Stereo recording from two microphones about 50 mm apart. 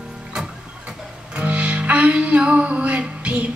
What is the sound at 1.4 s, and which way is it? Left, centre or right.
Music, right.